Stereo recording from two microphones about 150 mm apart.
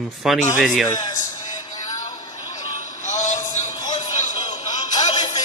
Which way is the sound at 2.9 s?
55° left (ahead or behind).